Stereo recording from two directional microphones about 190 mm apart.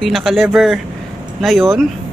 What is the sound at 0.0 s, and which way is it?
Speech, centre (ahead or behind).